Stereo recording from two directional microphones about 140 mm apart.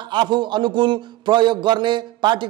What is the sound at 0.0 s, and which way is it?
A man's voice, 35° right (ahead or behind).